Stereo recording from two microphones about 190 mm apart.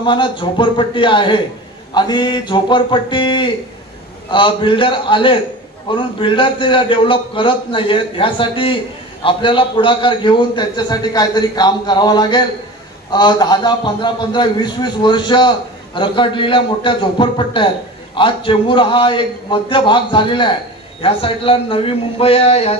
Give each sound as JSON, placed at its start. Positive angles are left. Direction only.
{"t": 0.0, "sound": "a man's voice", "side_deg": 25}